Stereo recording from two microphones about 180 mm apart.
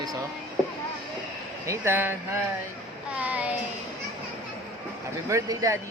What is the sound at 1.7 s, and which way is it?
Speech, 10° right (ahead or behind).